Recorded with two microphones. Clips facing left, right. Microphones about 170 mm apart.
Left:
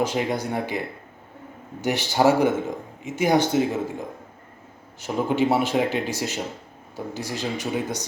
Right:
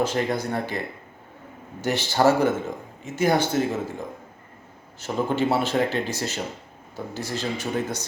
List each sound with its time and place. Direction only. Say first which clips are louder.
0.0 s speech: even; 15° left (ahead or behind)
1.8 s speech: even; 15° left (ahead or behind)
4.9 s speech: left 2 dB; 10° left (ahead or behind)